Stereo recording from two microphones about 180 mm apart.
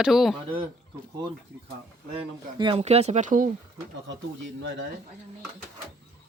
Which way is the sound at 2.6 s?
30° right (ahead or behind).